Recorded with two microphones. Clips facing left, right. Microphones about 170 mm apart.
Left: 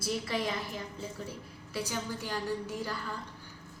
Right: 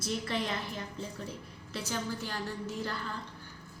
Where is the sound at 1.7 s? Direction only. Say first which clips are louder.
Even; 15° left (ahead or behind).